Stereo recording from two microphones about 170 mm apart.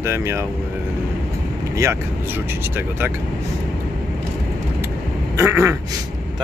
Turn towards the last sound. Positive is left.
turn(degrees=-15)  # may be behind; listen again after turning